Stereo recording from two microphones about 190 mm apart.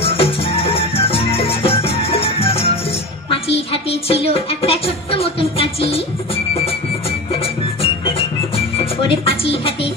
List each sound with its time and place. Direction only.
0.0 s music: 30° left (ahead or behind)
3.3 s speech: 30° left (ahead or behind)
7.8 s music: 30° left (ahead or behind)